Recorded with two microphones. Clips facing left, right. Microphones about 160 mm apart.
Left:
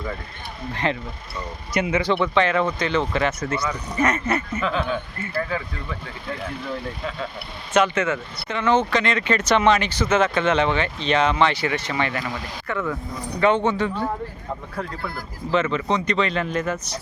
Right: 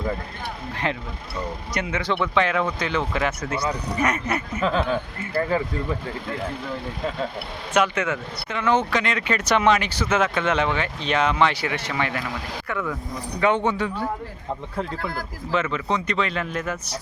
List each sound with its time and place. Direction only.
0.7 s speech: 5° right (ahead or behind)
4.6 s speech: 35° right (ahead or behind)
7.7 s speech: 10° right (ahead or behind)
15.7 s speech: 5° right (ahead or behind)